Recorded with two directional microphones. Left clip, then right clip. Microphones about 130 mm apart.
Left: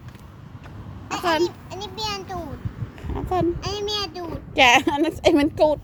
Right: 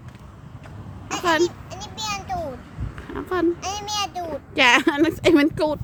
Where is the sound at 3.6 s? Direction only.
35° right (ahead or behind).